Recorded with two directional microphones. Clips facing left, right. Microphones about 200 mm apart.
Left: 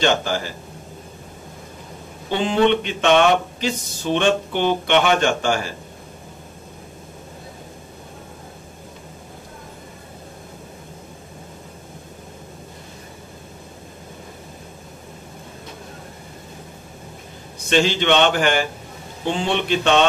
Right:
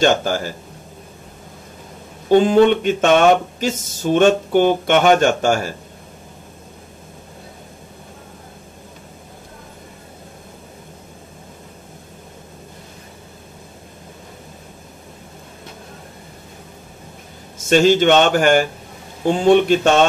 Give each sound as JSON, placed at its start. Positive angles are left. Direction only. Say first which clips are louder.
{"t": 0.0, "sound": "speech", "louder": "right 4 dB", "side_deg": -45}
{"t": 2.2, "sound": "speech", "louder": "right 6 dB", "side_deg": -45}
{"t": 17.6, "sound": "speech", "louder": "right 6 dB", "side_deg": -45}